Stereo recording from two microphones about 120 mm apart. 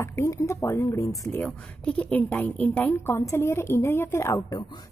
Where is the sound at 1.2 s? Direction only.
10° left (ahead or behind).